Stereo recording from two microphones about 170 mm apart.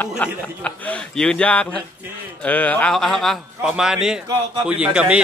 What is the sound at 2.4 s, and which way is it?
A man's voice, 10° left (ahead or behind).